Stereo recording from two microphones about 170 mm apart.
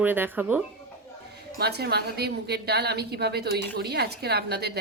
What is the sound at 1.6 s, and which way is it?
A woman's voice, 70° right (ahead or behind).